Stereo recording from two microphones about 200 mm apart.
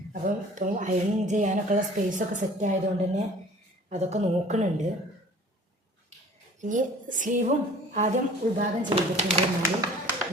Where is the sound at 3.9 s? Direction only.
35° right (ahead or behind).